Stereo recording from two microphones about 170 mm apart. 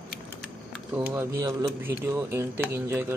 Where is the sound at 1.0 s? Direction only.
20° right (ahead or behind).